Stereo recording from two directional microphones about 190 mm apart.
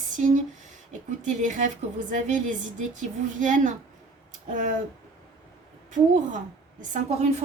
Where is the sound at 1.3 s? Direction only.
40° right (ahead or behind).